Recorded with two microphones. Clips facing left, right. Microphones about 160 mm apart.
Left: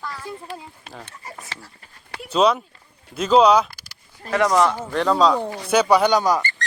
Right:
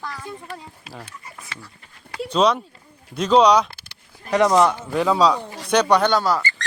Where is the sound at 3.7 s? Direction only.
25° right (ahead or behind).